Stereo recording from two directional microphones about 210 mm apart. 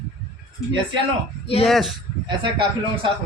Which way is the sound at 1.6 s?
Centre (ahead or behind).